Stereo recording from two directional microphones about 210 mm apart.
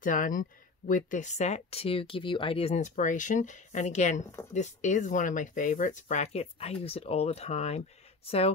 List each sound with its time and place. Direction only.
0.0 s speech: 40° left (ahead or behind)